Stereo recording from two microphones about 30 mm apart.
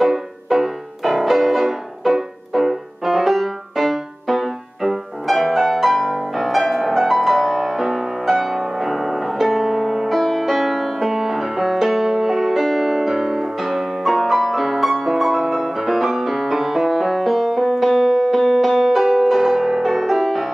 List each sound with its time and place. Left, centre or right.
0.0 s music: centre
12.4 s music: centre